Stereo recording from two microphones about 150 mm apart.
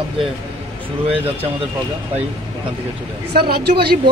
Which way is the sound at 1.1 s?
10° right (ahead or behind).